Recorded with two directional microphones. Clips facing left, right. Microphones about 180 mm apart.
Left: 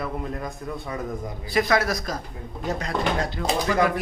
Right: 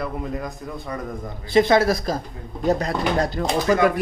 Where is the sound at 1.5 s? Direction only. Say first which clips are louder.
Right 6 dB; 25° right (ahead or behind).